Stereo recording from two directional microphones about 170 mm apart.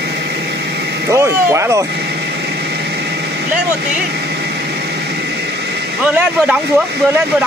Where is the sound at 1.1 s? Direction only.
15° right (ahead or behind).